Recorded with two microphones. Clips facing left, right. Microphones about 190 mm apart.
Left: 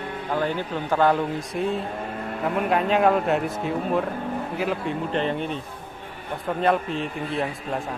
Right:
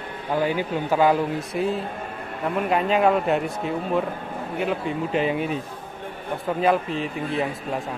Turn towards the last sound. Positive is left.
turn(degrees=0)  # may be behind; listen again after turning